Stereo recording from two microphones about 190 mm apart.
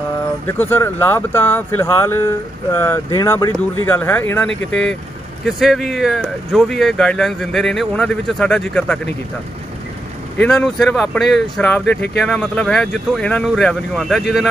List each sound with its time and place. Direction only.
0.5 s speech: 10° left (ahead or behind)
10.3 s speech: 5° left (ahead or behind)